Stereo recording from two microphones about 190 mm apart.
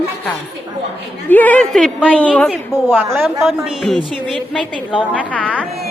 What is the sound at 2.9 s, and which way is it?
Speech, 10° right (ahead or behind).